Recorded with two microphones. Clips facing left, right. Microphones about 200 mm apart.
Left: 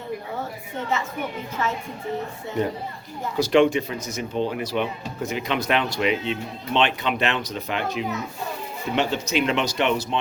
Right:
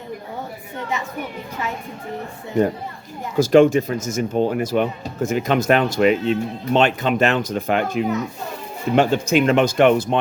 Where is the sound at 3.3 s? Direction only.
45° right (ahead or behind).